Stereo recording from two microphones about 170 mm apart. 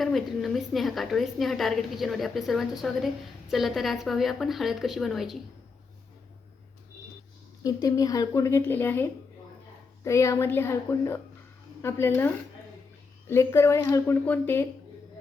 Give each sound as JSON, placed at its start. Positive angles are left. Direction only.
{"t": 0.0, "sound": "a woman's voice", "side_deg": 0}
{"t": 7.6, "sound": "a woman's voice", "side_deg": 20}